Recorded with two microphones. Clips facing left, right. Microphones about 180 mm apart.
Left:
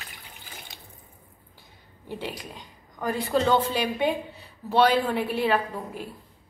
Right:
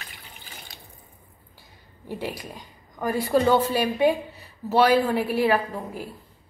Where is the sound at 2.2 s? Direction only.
10° right (ahead or behind).